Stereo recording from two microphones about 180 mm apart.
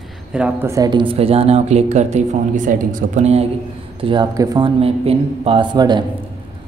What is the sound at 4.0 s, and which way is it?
A man's voice, 25° right (ahead or behind).